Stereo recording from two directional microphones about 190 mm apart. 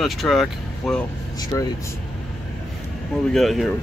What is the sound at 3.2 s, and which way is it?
Speech, centre (ahead or behind).